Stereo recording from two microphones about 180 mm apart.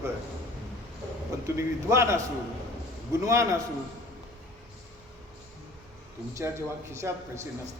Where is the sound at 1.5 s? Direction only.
15° right (ahead or behind).